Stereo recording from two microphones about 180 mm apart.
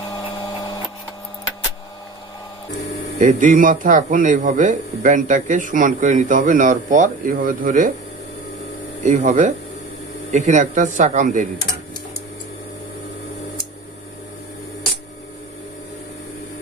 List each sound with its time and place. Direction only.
3.2 s a man's voice: 45° right (ahead or behind)
9.0 s a man's voice: 40° right (ahead or behind)